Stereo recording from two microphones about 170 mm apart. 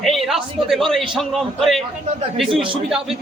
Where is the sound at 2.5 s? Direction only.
30° right (ahead or behind).